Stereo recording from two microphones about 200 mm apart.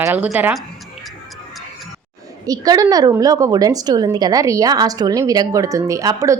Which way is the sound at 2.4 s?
20° right (ahead or behind).